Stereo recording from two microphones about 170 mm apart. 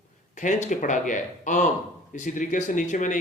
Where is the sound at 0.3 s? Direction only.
45° left (ahead or behind).